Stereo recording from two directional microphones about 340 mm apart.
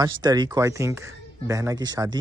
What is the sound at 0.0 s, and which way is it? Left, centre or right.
Speech, centre.